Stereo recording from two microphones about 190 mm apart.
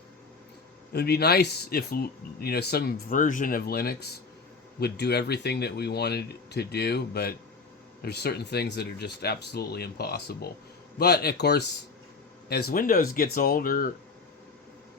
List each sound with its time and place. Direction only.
0.9 s speech: 55° left (ahead or behind)